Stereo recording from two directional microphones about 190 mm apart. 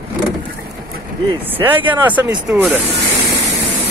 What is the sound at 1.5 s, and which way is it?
Speech, 10° right (ahead or behind).